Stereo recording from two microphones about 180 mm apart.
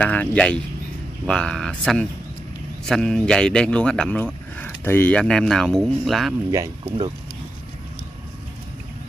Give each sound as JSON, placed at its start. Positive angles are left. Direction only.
{"t": 0.0, "sound": "speech", "side_deg": 5}
{"t": 6.5, "sound": "speech", "side_deg": -20}